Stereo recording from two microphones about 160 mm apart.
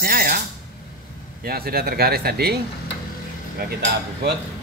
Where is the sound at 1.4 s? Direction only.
75° right (ahead or behind).